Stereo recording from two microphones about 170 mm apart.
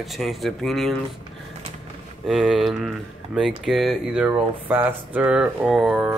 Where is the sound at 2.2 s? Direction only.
Centre (ahead or behind).